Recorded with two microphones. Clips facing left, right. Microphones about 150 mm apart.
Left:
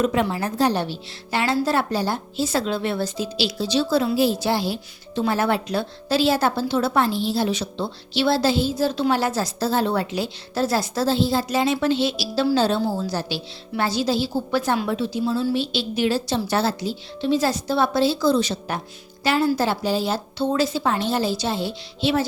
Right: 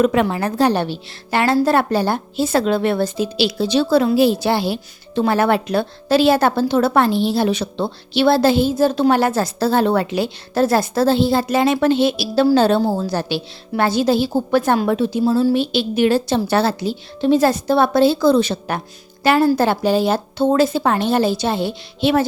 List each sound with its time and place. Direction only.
0.0 s speech: 70° right (ahead or behind)
15.2 s a woman's voice: 40° right (ahead or behind)
15.5 s speech: 55° right (ahead or behind)